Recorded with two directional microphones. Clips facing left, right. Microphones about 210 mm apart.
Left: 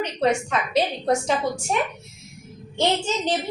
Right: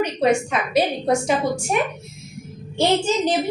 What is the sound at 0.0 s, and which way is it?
A woman's voice, 10° right (ahead or behind).